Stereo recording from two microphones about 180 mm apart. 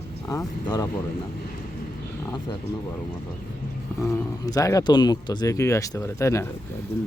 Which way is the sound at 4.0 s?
15° left (ahead or behind).